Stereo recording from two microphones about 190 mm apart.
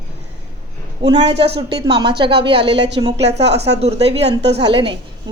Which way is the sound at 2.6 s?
65° right (ahead or behind).